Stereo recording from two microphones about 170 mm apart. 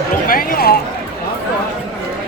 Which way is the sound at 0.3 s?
60° left (ahead or behind).